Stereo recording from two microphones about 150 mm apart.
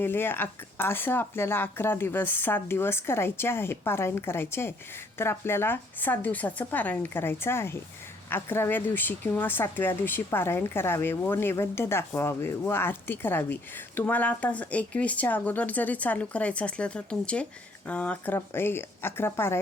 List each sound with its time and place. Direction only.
0.0 s speech: 15° left (ahead or behind)